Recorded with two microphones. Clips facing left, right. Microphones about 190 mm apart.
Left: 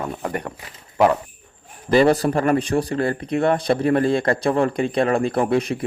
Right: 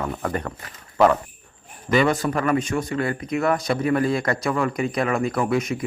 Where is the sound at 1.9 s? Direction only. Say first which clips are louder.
Left 4 dB; 35° left (ahead or behind).